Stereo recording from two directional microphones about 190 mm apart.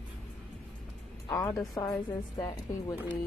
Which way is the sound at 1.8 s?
20° left (ahead or behind).